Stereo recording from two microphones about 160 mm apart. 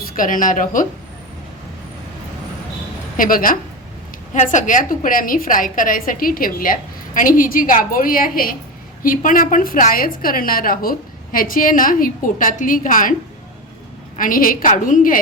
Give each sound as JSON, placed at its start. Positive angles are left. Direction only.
{"t": 0.0, "sound": "a woman's voice", "side_deg": 55}
{"t": 3.2, "sound": "a woman's voice", "side_deg": 60}
{"t": 14.2, "sound": "a woman's voice", "side_deg": 60}